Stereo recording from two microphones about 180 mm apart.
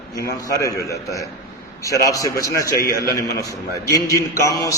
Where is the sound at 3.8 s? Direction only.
20° left (ahead or behind).